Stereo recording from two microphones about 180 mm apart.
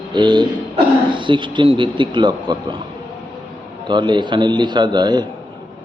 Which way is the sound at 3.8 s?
25° right (ahead or behind).